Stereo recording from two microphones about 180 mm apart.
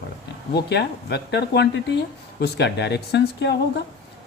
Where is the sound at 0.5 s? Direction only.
65° left (ahead or behind).